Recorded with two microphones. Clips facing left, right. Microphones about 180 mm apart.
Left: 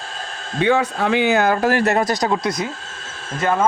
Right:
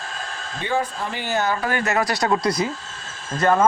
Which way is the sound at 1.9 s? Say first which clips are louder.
Left 3 dB; 45° left (ahead or behind).